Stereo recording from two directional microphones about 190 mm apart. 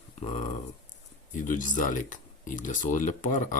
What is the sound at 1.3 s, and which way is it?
Speech, 45° left (ahead or behind).